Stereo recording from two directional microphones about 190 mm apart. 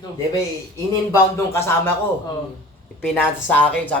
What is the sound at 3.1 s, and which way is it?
Speech, 10° left (ahead or behind).